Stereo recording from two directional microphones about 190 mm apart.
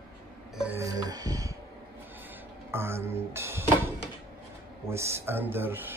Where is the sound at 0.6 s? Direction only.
10° right (ahead or behind).